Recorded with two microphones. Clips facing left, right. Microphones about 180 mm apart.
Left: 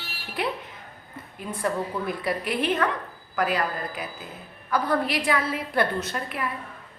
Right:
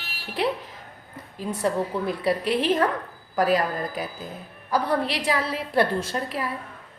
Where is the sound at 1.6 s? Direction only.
30° right (ahead or behind).